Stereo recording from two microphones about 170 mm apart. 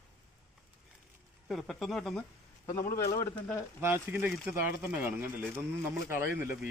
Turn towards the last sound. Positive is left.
turn(degrees=-15)  # may be behind; listen again after turning